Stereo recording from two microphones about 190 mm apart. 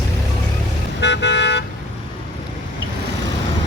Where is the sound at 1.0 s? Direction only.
65° left (ahead or behind).